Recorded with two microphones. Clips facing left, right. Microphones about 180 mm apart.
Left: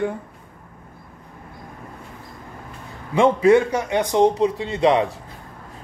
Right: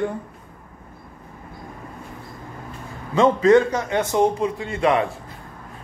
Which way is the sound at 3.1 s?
15° left (ahead or behind).